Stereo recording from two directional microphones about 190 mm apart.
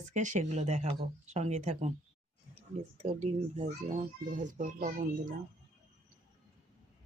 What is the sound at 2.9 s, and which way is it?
Speech, 35° right (ahead or behind).